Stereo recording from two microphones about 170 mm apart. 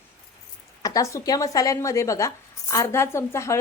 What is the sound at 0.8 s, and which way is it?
A woman's voice, 20° left (ahead or behind).